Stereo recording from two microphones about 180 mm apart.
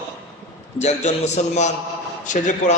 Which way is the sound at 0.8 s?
40° left (ahead or behind).